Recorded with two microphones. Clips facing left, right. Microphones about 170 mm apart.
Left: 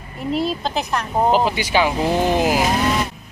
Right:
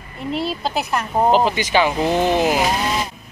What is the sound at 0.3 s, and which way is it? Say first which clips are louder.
Speech: left 1 dB; centre (ahead or behind).